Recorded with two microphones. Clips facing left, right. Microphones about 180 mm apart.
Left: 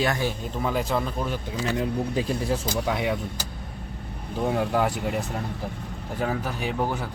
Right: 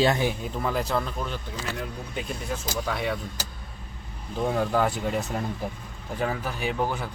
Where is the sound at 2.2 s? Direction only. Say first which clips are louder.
Left 2 dB; 35° left (ahead or behind).